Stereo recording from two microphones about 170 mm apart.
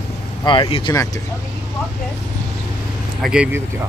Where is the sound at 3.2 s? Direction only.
5° right (ahead or behind).